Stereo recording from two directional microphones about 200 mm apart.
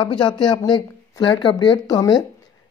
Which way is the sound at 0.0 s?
20° left (ahead or behind).